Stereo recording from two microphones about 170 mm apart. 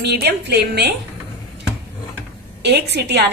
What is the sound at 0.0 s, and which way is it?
Speech, 75° right (ahead or behind).